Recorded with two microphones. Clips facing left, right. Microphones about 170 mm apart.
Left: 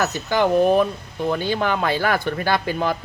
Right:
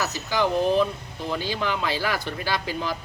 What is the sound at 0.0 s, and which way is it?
Speech, 55° left (ahead or behind).